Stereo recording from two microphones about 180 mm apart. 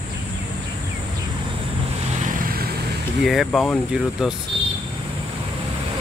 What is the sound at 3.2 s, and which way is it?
Speech, centre (ahead or behind).